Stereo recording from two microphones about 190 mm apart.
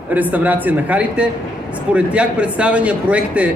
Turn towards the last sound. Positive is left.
turn(degrees=-5)  # may be behind; listen again after turning